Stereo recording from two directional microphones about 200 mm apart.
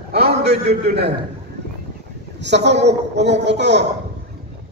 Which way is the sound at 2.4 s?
60° right (ahead or behind).